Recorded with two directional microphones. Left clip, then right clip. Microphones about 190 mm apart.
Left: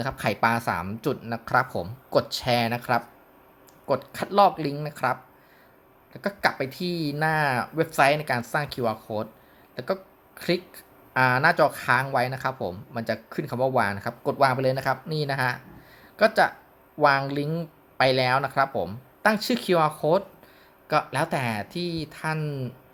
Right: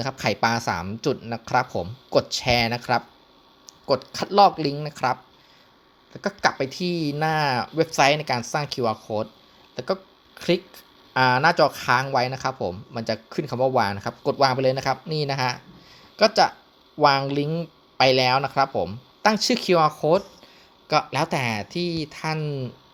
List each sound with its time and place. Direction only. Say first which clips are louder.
0.0 s speech: right 1 dB; 25° right (ahead or behind)
6.1 s speech: right 2 dB; 30° right (ahead or behind)
11.1 s speech: right 2 dB; 30° right (ahead or behind)